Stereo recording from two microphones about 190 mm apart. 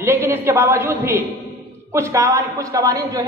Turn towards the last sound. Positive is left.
turn(degrees=-20)  # may be behind; listen again after turning